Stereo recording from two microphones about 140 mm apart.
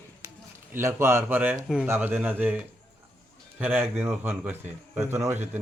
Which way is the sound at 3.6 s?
10° right (ahead or behind).